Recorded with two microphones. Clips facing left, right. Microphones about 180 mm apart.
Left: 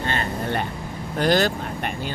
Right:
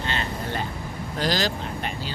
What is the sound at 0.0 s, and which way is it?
Vehicle, 50° left (ahead or behind).